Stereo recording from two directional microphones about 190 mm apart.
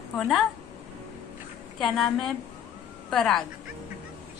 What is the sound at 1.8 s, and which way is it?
A woman's voice, centre (ahead or behind).